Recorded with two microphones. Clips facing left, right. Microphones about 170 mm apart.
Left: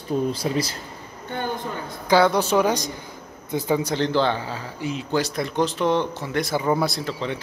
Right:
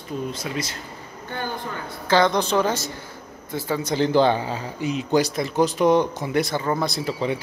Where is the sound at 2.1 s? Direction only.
10° left (ahead or behind).